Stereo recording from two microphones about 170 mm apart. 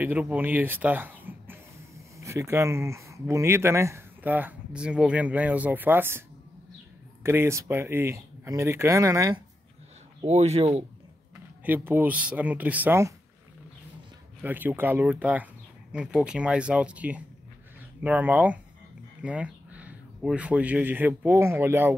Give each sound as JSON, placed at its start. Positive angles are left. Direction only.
{"t": 0.0, "sound": "speech", "side_deg": -10}
{"t": 7.2, "sound": "speech", "side_deg": -15}
{"t": 10.2, "sound": "speech", "side_deg": -40}
{"t": 11.6, "sound": "speech", "side_deg": -10}
{"t": 14.4, "sound": "speech", "side_deg": -10}